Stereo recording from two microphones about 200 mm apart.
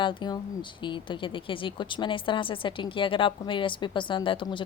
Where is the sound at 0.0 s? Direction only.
25° left (ahead or behind).